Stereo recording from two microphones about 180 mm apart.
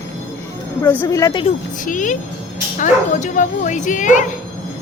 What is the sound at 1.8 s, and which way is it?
Speech, 45° left (ahead or behind).